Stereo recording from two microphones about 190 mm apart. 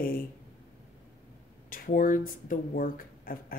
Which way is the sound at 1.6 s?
45° left (ahead or behind).